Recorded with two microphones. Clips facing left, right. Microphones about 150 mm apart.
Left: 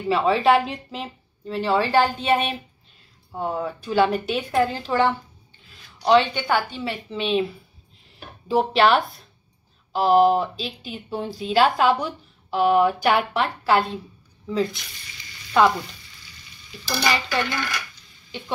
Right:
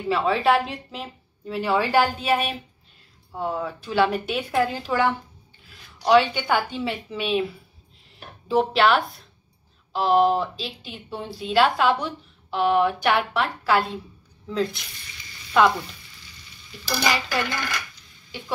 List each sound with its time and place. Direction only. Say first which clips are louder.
0.1 s a woman's voice: left 2 dB; centre (ahead or behind); by 7.0 s 20° right (ahead or behind)
7.1 s a woman's voice: left 3 dB; 10° right (ahead or behind)
8.5 s speech: left 1 dB; centre (ahead or behind)
15.5 s frying: left 1 dB; centre (ahead or behind)
16.8 s speech: left 1 dB; 5° right (ahead or behind)